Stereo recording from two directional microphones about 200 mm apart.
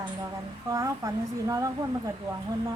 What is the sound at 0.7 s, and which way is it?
A child's voice, 15° right (ahead or behind).